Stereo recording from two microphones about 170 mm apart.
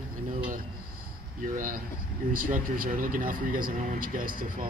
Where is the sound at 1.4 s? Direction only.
55° right (ahead or behind).